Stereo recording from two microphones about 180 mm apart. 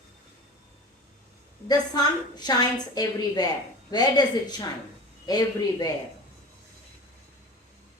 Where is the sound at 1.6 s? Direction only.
20° left (ahead or behind).